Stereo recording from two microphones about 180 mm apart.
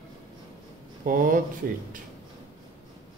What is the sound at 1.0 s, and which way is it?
Speech, 50° right (ahead or behind).